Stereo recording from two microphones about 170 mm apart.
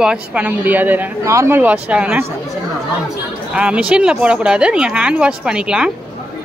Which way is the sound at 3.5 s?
5° right (ahead or behind).